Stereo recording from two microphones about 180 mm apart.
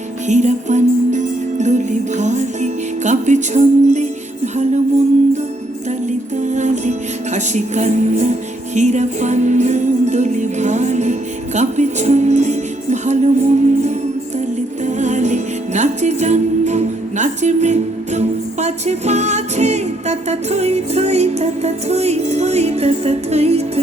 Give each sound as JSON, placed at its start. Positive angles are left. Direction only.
{"t": 0.3, "sound": "music", "side_deg": -40}
{"t": 6.1, "sound": "music", "side_deg": -40}